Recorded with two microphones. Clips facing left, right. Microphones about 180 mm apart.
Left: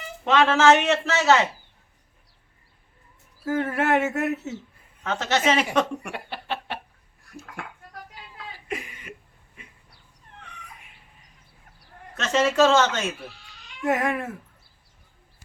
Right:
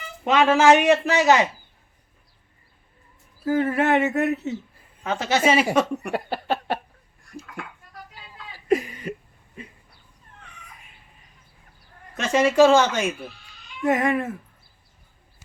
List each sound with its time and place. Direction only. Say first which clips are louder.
0.3 s a man's voice: right 2 dB; 15° right (ahead or behind)
3.4 s speech: right 3 dB; centre (ahead or behind)
5.0 s a man's voice: right 2 dB; 10° right (ahead or behind)
6.1 s a sound: right 7 dB; 40° right (ahead or behind)
8.6 s a sound: right 13 dB; 40° right (ahead or behind)
9.6 s dog: right 10 dB; 35° right (ahead or behind)
12.1 s a man's voice: right 3 dB; 10° right (ahead or behind)
13.8 s speech: right 3 dB; centre (ahead or behind)